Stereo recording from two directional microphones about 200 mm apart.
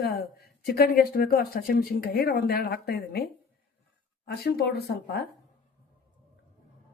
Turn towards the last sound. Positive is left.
turn(degrees=55)  # may be behind; listen again after turning